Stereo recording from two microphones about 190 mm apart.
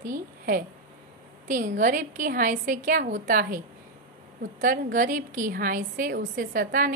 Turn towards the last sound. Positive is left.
turn(degrees=-45)  # may be behind; listen again after turning